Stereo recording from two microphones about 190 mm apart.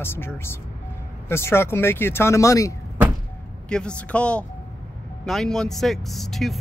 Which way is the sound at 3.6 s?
5° left (ahead or behind).